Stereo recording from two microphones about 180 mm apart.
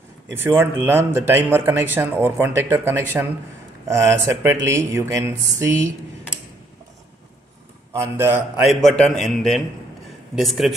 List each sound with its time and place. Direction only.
0.3 s speech: 10° right (ahead or behind)
7.9 s speech: 15° right (ahead or behind)
8.6 s a man's voice: centre (ahead or behind)